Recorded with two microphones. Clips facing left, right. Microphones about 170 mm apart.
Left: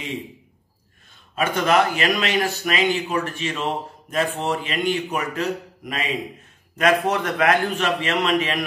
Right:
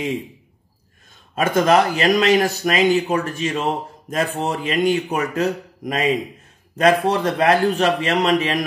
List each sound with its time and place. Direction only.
1.3 s a man's voice: 40° right (ahead or behind)